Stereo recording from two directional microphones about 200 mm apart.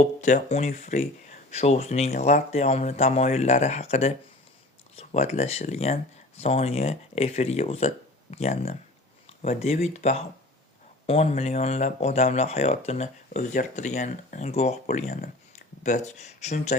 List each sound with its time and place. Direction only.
0.0 s speech: 35° left (ahead or behind)